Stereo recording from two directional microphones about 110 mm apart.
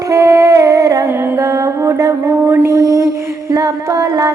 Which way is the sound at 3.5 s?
35° right (ahead or behind).